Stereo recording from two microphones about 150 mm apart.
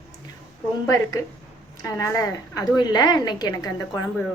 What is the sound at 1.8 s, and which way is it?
A woman's voice, 20° left (ahead or behind).